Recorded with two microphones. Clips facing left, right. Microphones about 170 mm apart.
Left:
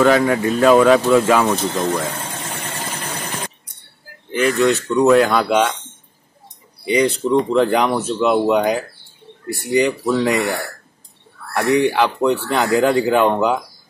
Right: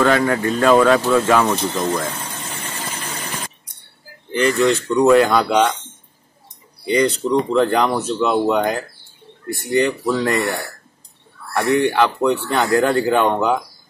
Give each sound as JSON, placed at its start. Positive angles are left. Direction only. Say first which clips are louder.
{"t": 0.0, "sound": "speech", "louder": "left 2 dB", "side_deg": 10}
{"t": 2.9, "sound": "engine", "louder": "left 2 dB", "side_deg": 55}
{"t": 4.3, "sound": "speech", "louder": "even", "side_deg": 5}
{"t": 6.8, "sound": "speech", "louder": "even", "side_deg": 5}
{"t": 11.5, "sound": "speech", "louder": "left 1 dB", "side_deg": 5}